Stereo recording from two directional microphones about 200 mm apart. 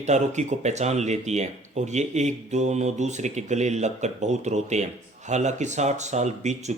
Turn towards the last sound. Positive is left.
turn(degrees=-35)  # may be behind; listen again after turning